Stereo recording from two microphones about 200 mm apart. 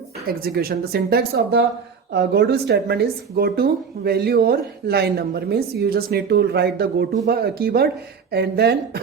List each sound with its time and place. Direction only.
0.3 s a woman's voice: 50° right (ahead or behind)